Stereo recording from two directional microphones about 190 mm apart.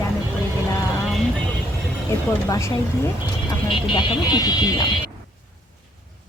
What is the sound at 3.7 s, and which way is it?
A woman's voice, 25° left (ahead or behind).